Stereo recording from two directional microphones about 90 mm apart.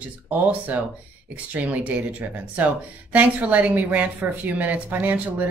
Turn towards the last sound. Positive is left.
turn(degrees=-20)  # may be behind; listen again after turning